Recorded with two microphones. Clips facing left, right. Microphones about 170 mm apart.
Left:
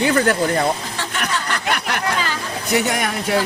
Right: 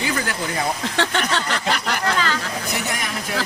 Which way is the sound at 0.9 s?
70° right (ahead or behind).